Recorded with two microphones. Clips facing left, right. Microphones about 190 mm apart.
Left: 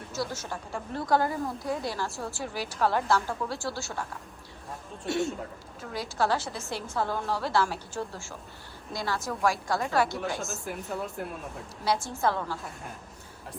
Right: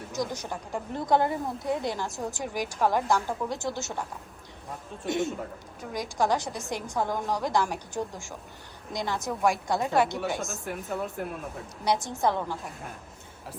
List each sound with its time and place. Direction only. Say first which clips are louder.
0.1 s a woman's voice: right 2 dB; 15° right (ahead or behind)
5.0 s a woman's voice: right 1 dB; 20° right (ahead or behind)
10.2 s speech: right 2 dB; centre (ahead or behind)
11.9 s a woman's voice: right 1 dB; 20° right (ahead or behind)